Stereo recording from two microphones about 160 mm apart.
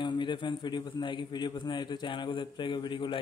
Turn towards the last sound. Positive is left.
turn(degrees=30)  # may be behind; listen again after turning